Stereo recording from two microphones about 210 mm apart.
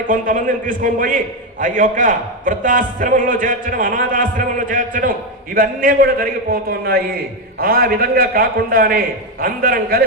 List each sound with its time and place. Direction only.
0.1 s a man's voice: 40° right (ahead or behind)